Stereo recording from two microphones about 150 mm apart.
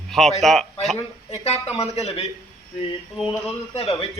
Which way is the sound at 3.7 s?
40° left (ahead or behind).